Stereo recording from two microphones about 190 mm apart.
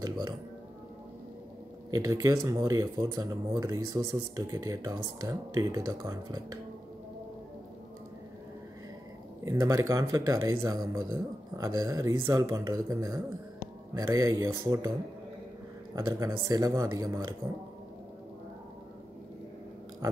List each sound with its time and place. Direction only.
1.9 s speech: 20° right (ahead or behind)
9.4 s speech: 15° right (ahead or behind)
15.9 s speech: 20° right (ahead or behind)